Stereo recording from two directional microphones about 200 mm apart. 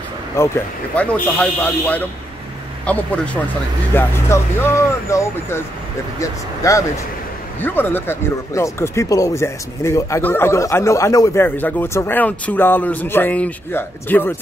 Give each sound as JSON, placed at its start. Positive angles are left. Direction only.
{"t": 0.4, "sound": "speech", "side_deg": 15}